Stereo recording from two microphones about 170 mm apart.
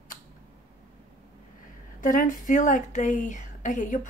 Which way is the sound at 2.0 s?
50° left (ahead or behind).